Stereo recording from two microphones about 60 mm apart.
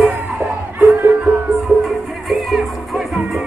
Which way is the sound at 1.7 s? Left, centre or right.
Right.